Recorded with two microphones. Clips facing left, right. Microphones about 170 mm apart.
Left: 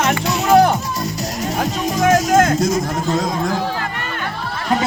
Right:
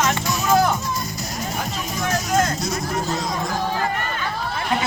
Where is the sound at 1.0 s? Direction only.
80° left.